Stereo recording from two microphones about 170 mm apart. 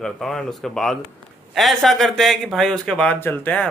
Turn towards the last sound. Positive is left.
turn(degrees=10)  # may be behind; listen again after turning